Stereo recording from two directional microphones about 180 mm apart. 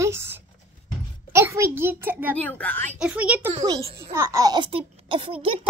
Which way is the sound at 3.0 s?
5° right (ahead or behind).